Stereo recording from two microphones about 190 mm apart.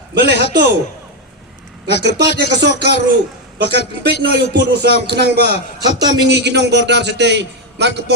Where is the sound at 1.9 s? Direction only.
65° right (ahead or behind).